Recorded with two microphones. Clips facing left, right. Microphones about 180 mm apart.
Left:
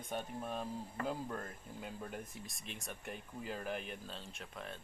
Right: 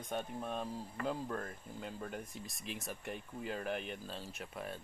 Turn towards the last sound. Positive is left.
turn(degrees=-5)  # may be behind; listen again after turning